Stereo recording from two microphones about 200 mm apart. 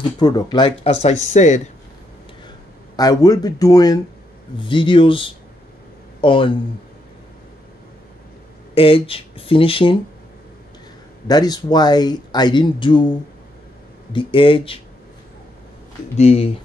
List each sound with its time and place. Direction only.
0.2 s speech: 20° left (ahead or behind); by 1.6 s 35° left (ahead or behind)
3.0 s speech: 20° left (ahead or behind)
8.7 s speech: 25° left (ahead or behind)
11.2 s speech: 20° left (ahead or behind)
14.1 s speech: 25° left (ahead or behind)
16.2 s speech: 30° left (ahead or behind)